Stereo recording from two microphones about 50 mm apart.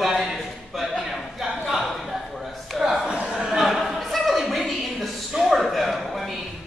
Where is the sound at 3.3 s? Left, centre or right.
Centre.